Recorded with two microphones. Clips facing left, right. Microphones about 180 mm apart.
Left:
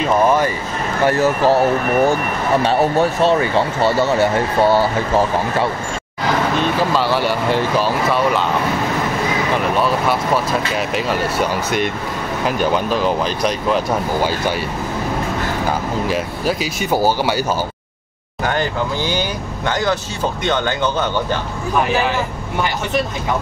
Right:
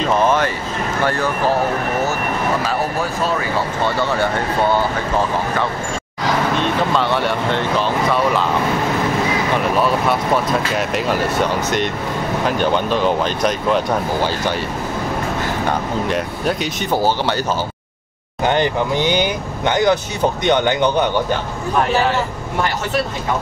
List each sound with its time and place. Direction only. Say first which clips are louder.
0.0 s vehicle: left 1 dB; 10° left (ahead or behind)
2.6 s speech: left 6 dB; 30° left (ahead or behind)
6.6 s speech: left 1 dB; centre (ahead or behind)
9.6 s speech: right 1 dB; centre (ahead or behind)
15.6 s speech: even; 5° left (ahead or behind)
18.4 s speech: right 3 dB; 20° right (ahead or behind)